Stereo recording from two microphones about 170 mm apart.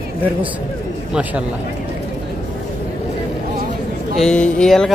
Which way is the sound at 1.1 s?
5° right (ahead or behind).